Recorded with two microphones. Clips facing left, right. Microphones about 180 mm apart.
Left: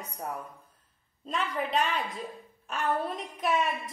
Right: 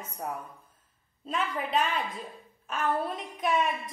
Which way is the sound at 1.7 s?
Centre (ahead or behind).